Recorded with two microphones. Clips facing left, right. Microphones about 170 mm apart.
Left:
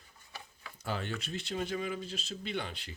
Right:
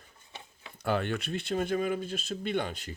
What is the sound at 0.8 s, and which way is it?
Speech, 60° right (ahead or behind).